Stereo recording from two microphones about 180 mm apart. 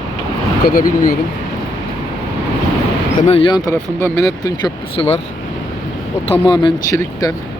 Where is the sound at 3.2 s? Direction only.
30° left (ahead or behind).